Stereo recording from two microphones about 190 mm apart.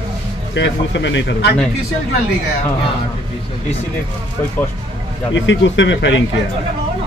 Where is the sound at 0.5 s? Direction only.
70° left (ahead or behind).